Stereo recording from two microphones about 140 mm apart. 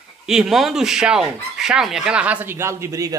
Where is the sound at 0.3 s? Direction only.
5° right (ahead or behind).